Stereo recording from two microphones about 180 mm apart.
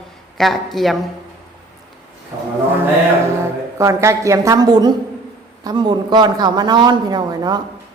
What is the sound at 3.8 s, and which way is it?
A woman's voice, 15° right (ahead or behind).